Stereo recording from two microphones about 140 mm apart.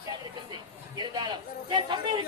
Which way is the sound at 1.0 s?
30° right (ahead or behind).